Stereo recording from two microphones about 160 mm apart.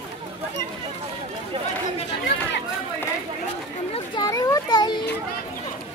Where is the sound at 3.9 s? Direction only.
25° left (ahead or behind).